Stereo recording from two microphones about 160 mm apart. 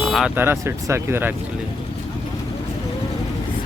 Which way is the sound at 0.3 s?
15° right (ahead or behind).